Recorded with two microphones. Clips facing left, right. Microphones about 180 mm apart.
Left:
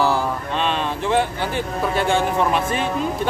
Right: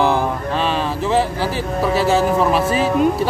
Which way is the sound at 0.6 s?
5° right (ahead or behind).